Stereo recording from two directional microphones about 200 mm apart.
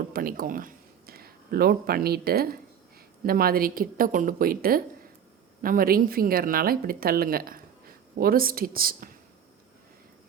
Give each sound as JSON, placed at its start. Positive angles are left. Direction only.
{"t": 0.1, "sound": "speech", "side_deg": -45}